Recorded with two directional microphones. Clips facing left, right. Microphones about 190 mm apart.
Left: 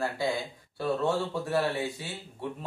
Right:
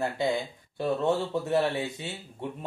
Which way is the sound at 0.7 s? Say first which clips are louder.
Right 2 dB; 20° right (ahead or behind).